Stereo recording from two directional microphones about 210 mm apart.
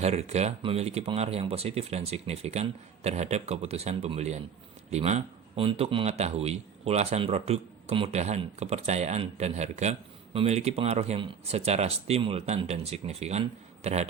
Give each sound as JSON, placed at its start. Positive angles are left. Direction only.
{"t": 0.0, "sound": "a man's voice", "side_deg": -30}